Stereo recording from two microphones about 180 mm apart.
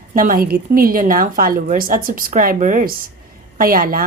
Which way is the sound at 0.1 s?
50° right (ahead or behind).